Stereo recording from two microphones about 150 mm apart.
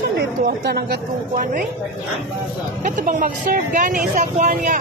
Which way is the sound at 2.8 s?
60° right (ahead or behind).